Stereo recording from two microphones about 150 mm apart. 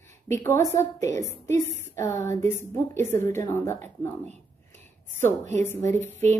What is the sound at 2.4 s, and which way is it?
A woman's voice, 15° left (ahead or behind).